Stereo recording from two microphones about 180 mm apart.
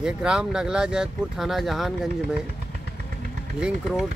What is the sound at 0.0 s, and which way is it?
Speech, 5° right (ahead or behind).